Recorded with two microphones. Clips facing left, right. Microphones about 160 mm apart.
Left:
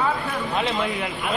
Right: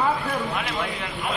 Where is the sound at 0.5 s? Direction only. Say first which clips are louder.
Left 4 dB; 20° left (ahead or behind).